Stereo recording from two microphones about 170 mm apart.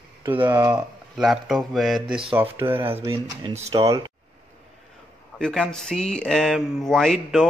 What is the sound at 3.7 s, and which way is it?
Speech, 20° right (ahead or behind).